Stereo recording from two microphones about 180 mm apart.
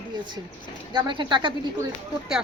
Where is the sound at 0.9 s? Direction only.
25° right (ahead or behind).